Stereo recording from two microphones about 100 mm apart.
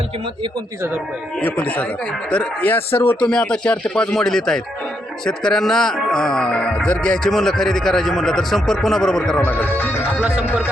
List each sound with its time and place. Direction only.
1.4 s speech: 15° left (ahead or behind)
3.2 s speech: 10° left (ahead or behind)
9.4 s speech: 20° left (ahead or behind)
10.2 s speech: 10° right (ahead or behind)